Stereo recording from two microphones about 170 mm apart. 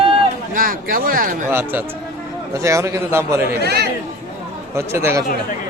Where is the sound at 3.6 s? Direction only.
75° right (ahead or behind).